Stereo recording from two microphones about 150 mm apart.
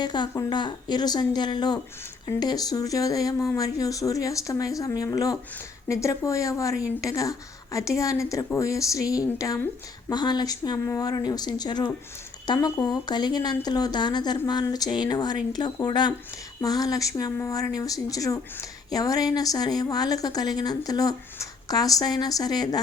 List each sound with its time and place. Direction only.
0.0 s a woman's voice: 30° left (ahead or behind)